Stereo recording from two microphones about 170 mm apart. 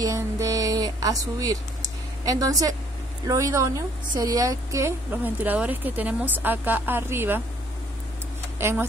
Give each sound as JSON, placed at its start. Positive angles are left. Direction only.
{"t": 0.0, "sound": "music", "side_deg": -20}
{"t": 2.2, "sound": "a woman's voice", "side_deg": -20}
{"t": 8.5, "sound": "speech", "side_deg": -15}